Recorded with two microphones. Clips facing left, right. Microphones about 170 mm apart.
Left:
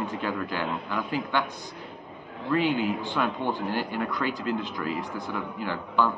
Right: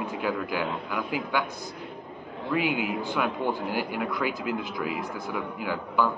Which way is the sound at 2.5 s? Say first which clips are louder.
Left 2 dB; 10° right (ahead or behind).